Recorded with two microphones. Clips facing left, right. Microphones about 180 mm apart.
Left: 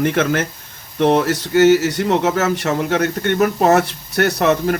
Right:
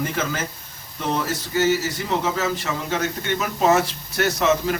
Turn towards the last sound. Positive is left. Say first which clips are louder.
# left 4 dB
turn(degrees=60)  # may be behind; listen again after turning